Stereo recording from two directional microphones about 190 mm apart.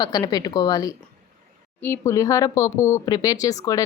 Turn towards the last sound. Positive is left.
turn(degrees=20)  # may be behind; listen again after turning